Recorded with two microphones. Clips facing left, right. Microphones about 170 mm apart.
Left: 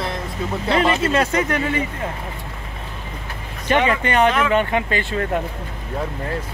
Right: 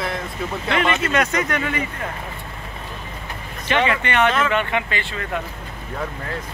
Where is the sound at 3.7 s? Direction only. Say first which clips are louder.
Left 2 dB; 40° left (ahead or behind).